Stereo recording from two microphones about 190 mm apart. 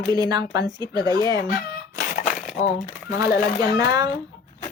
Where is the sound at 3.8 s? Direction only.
20° right (ahead or behind).